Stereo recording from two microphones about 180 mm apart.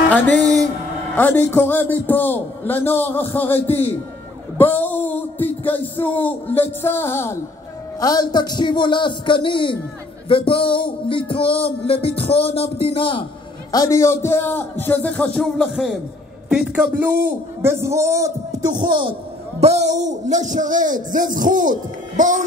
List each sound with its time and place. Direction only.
0.1 s a man's voice: 10° left (ahead or behind); by 9.8 s 30° left (ahead or behind)
10.2 s music: 30° left (ahead or behind)
13.7 s a man's voice: 20° left (ahead or behind); by 19.1 s 25° right (ahead or behind)
19.6 s speech: 40° right (ahead or behind)